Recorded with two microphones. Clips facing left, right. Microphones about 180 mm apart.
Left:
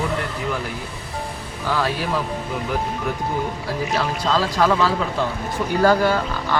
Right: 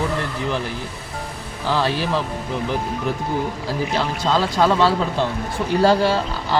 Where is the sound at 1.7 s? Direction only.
25° right (ahead or behind).